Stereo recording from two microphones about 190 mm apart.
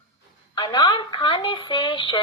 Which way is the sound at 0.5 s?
20° left (ahead or behind).